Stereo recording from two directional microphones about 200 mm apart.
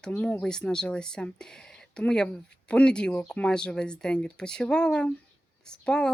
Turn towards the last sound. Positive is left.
turn(degrees=5)  # may be behind; listen again after turning